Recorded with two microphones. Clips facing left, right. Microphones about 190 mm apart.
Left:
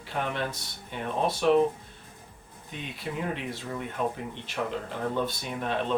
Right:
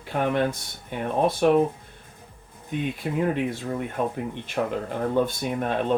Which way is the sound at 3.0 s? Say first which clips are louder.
Right 6 dB; 50° right (ahead or behind).